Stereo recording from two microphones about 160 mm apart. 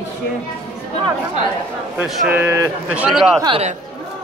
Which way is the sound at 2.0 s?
10° right (ahead or behind).